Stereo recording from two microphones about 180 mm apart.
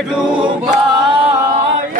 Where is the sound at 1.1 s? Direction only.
30° right (ahead or behind).